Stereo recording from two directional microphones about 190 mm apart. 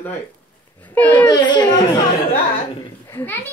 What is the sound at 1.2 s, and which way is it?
Speech, 25° left (ahead or behind).